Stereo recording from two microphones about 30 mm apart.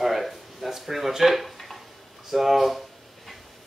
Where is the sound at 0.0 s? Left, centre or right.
Centre.